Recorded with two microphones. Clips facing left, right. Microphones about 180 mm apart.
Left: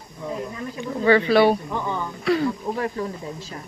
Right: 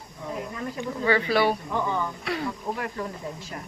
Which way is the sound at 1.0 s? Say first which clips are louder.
Left 6 dB; 25° left (ahead or behind).